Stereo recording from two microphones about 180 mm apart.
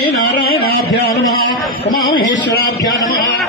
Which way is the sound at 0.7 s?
70° left (ahead or behind).